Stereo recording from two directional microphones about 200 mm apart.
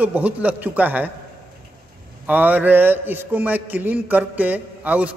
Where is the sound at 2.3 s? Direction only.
10° right (ahead or behind).